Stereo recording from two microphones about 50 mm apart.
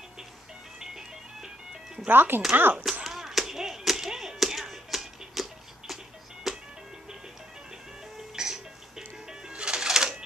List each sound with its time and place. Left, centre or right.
0.7 s music: centre
2.0 s speech: right
2.8 s a sound: centre
6.5 s music: centre
8.4 s music: centre